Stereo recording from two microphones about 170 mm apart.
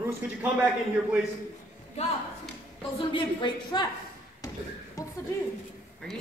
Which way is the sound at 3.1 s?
25° left (ahead or behind).